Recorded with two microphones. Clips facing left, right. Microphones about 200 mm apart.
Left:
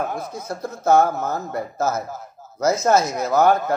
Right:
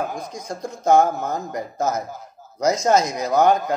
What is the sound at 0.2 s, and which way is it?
Speech, 15° right (ahead or behind).